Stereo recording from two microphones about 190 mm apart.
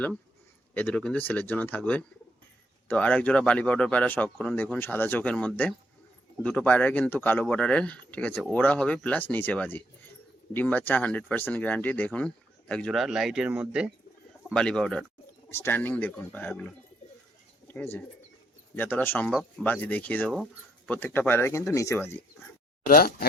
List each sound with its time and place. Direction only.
0.7 s speech: 5° left (ahead or behind)
14.5 s speech: 5° left (ahead or behind)
17.7 s bird: 10° left (ahead or behind)
18.8 s speech: 10° left (ahead or behind)
20.3 s speech: 5° right (ahead or behind)
20.9 s speech: 10° left (ahead or behind)
22.9 s speech: 50° left (ahead or behind)